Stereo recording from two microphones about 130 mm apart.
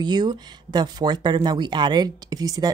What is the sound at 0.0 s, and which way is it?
Speech, 35° right (ahead or behind).